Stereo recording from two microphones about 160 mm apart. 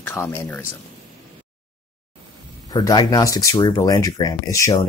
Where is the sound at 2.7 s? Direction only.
25° left (ahead or behind).